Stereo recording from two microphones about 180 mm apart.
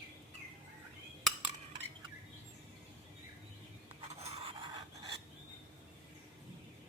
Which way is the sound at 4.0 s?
35° right (ahead or behind).